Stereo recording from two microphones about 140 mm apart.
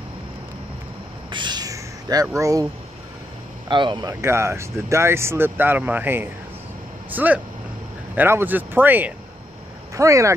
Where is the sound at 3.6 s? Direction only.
35° right (ahead or behind).